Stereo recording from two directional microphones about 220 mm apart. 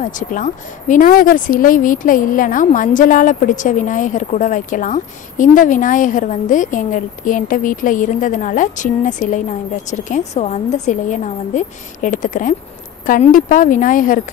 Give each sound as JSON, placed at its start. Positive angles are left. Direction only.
{"t": 0.0, "sound": "speech", "side_deg": 35}